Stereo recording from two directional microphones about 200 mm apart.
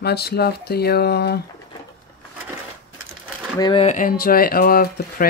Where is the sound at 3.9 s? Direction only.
45° left (ahead or behind).